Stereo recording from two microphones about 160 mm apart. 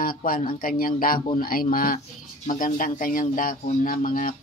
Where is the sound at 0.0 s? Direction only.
60° left (ahead or behind).